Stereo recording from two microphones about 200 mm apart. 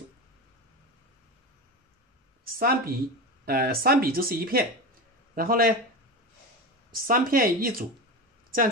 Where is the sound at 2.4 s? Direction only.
45° right (ahead or behind).